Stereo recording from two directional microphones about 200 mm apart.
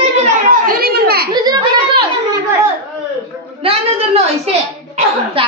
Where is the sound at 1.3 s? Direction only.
20° right (ahead or behind).